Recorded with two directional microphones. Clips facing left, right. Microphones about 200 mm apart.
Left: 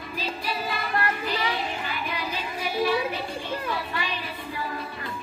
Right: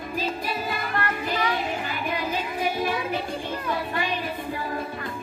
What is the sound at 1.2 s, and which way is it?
Child singing, 50° right (ahead or behind).